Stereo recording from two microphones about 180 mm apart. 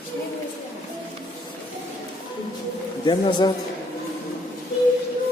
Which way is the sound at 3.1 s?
25° left (ahead or behind).